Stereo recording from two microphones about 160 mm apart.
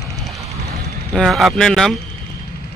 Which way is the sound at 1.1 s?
Centre (ahead or behind).